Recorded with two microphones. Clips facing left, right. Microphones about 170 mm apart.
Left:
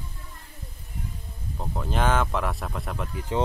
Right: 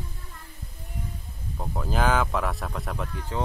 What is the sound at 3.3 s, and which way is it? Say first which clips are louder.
Speech: left 5 dB; 20° left (ahead or behind).